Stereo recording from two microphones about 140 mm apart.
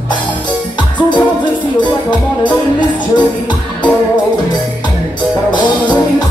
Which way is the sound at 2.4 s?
35° left (ahead or behind).